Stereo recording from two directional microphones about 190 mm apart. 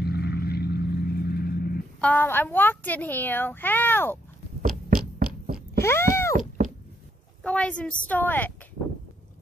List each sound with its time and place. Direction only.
0.0 s vehicle: 60° left (ahead or behind)
2.0 s a child's voice: 10° left (ahead or behind)
4.6 s a sound: 45° right (ahead or behind)
5.8 s cat: 15° left (ahead or behind)
7.4 s a child's voice: 5° left (ahead or behind)